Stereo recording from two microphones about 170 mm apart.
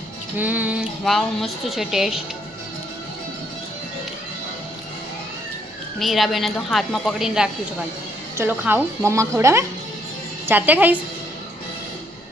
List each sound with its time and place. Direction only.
0.3 s a woman's voice: 10° right (ahead or behind)
6.0 s a woman's voice: centre (ahead or behind)